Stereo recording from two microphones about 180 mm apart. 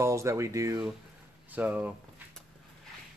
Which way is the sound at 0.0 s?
15° right (ahead or behind).